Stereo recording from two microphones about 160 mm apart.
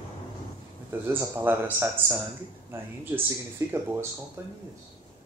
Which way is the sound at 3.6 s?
20° right (ahead or behind).